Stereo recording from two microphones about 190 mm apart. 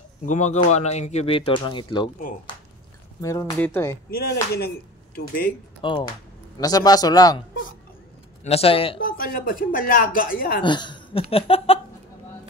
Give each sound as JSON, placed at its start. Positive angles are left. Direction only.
{"t": 0.2, "sound": "speech", "side_deg": 40}
{"t": 3.2, "sound": "speech", "side_deg": 15}
{"t": 4.1, "sound": "speech", "side_deg": 55}
{"t": 5.8, "sound": "speech", "side_deg": 25}
{"t": 8.5, "sound": "speech", "side_deg": 30}
{"t": 9.0, "sound": "a woman's voice", "side_deg": 50}
{"t": 10.6, "sound": "speech", "side_deg": 25}